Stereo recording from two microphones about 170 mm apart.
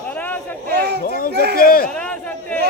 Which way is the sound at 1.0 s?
60° left (ahead or behind).